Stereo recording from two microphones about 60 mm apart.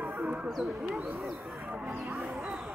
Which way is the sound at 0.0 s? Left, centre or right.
Right.